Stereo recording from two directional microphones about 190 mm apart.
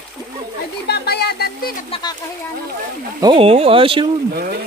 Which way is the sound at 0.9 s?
55° left (ahead or behind).